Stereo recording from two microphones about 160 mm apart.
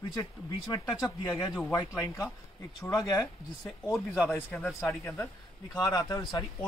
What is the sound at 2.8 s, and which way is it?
Speech, 20° left (ahead or behind).